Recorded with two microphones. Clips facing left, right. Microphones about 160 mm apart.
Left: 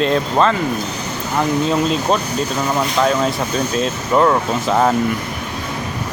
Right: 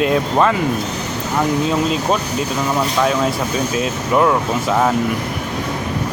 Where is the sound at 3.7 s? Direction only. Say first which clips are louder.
Left 1 dB; 5° right (ahead or behind).